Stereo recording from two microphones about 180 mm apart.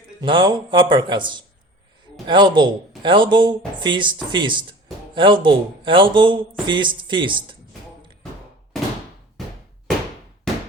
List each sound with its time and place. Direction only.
0.2 s speech: 25° right (ahead or behind)